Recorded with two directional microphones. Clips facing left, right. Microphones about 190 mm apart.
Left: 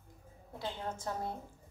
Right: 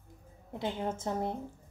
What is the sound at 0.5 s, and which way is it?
Speech, 20° right (ahead or behind).